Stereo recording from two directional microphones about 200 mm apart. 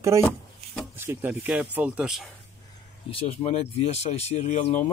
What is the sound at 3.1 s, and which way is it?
Speech, 35° left (ahead or behind).